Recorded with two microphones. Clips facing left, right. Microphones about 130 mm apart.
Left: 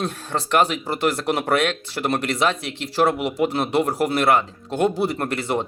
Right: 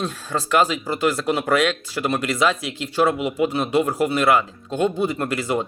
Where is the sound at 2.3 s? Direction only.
60° left (ahead or behind).